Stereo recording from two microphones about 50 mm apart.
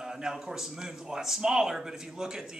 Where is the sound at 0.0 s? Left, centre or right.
Centre.